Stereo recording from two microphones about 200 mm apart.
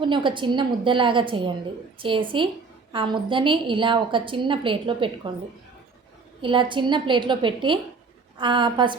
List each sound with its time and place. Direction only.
0.0 s a woman's voice: 25° right (ahead or behind)
6.4 s a woman's voice: 25° right (ahead or behind)